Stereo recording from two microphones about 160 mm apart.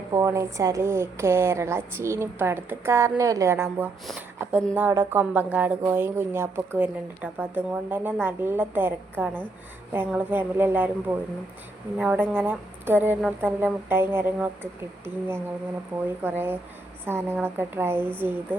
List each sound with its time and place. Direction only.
0.1 s a woman's voice: 20° right (ahead or behind)